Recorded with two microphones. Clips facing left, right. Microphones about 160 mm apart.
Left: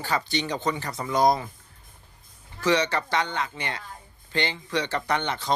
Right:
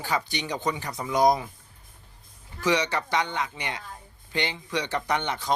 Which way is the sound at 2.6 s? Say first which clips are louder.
Left 2 dB; 15° right (ahead or behind).